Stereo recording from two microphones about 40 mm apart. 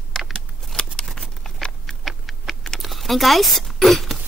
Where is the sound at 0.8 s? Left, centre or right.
Centre.